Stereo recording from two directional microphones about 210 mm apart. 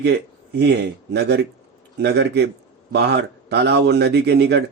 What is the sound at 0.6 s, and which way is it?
Speech, 50° right (ahead or behind).